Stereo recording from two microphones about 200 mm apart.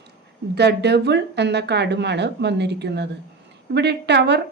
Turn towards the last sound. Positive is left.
turn(degrees=-55)  # may be behind; listen again after turning